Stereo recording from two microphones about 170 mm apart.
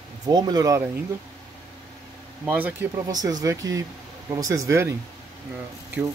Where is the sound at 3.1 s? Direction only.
20° right (ahead or behind).